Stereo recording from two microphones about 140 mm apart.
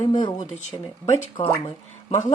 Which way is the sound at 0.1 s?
30° left (ahead or behind).